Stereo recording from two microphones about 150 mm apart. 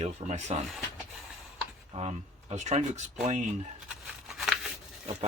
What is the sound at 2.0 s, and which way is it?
Speech, 45° right (ahead or behind).